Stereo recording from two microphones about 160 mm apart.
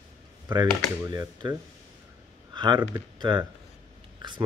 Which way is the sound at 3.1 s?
30° right (ahead or behind).